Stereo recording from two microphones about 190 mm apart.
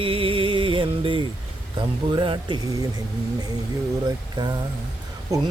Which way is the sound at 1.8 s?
25° right (ahead or behind).